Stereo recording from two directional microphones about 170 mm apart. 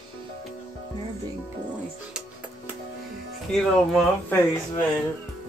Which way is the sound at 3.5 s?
Centre (ahead or behind).